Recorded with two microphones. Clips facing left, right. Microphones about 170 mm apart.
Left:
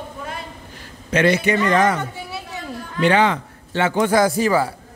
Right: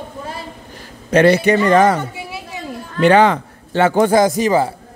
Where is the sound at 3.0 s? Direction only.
45° right (ahead or behind).